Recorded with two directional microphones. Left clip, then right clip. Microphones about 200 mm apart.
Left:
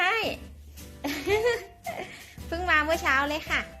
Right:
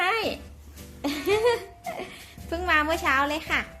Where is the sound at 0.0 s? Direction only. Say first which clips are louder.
Right 1 dB; centre (ahead or behind).